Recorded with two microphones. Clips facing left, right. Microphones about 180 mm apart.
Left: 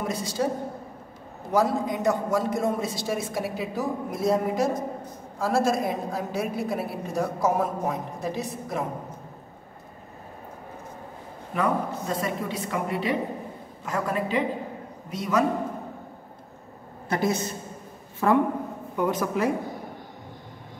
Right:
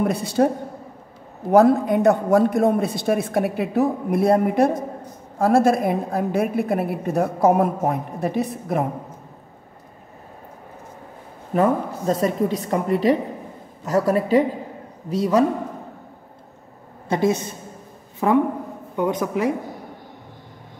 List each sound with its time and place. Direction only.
0.0 s a woman's voice: 60° right (ahead or behind)
1.5 s a woman's voice: 60° right (ahead or behind)
11.5 s a woman's voice: 40° right (ahead or behind)
17.1 s a woman's voice: 20° right (ahead or behind)